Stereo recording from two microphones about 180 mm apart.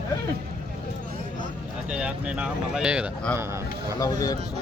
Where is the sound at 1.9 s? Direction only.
5° right (ahead or behind).